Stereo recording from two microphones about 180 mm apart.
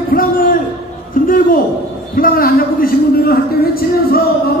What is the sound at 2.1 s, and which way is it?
A man's voice, 55° left (ahead or behind).